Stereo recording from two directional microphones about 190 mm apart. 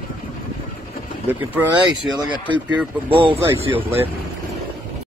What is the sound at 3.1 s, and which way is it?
Speech, 25° right (ahead or behind).